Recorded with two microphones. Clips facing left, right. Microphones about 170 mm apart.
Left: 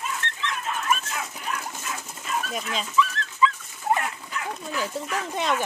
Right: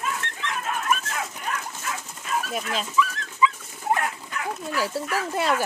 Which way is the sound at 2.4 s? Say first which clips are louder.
Right 2 dB; 5° right (ahead or behind).